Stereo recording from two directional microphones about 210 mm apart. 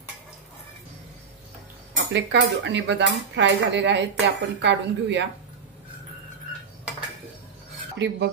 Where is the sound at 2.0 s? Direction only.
55° right (ahead or behind).